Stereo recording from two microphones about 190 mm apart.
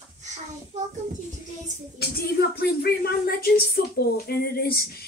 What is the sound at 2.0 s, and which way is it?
A woman's voice, 55° left (ahead or behind).